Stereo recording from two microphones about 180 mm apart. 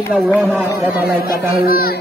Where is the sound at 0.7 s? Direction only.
10° right (ahead or behind).